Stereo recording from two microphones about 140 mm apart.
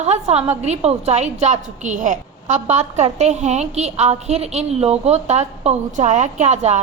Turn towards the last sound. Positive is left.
turn(degrees=-55)  # may be behind; listen again after turning